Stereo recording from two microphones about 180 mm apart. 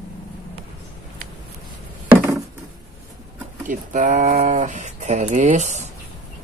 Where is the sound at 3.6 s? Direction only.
45° right (ahead or behind).